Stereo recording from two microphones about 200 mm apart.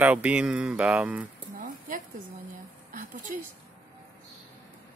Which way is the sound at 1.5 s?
45° right (ahead or behind).